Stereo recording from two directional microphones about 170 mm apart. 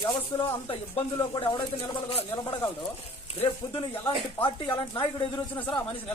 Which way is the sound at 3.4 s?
30° left (ahead or behind).